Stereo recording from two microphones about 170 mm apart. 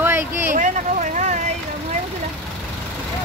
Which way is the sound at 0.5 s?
45° right (ahead or behind).